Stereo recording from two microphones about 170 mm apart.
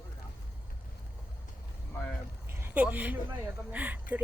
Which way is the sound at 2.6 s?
10° right (ahead or behind).